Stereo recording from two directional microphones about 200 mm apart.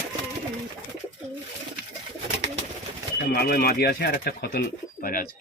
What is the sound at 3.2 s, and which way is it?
Speech, 50° left (ahead or behind).